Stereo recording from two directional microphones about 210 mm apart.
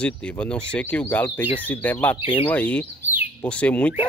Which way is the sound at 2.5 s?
5° left (ahead or behind).